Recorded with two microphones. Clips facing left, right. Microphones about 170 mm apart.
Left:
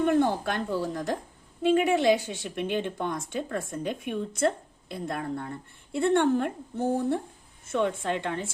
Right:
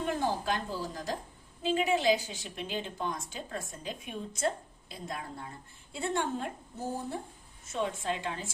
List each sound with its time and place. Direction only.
0.0 s a woman's voice: 60° left (ahead or behind)